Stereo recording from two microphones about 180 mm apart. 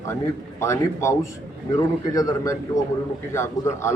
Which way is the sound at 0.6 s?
15° left (ahead or behind).